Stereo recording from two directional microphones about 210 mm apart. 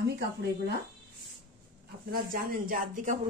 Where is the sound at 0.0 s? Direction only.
50° right (ahead or behind).